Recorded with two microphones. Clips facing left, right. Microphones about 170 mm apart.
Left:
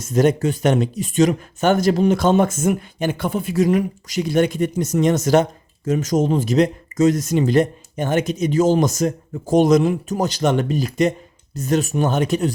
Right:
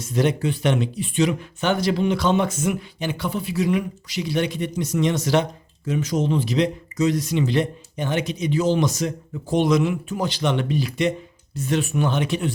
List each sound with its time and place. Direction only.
0.0 s speech: 45° left (ahead or behind)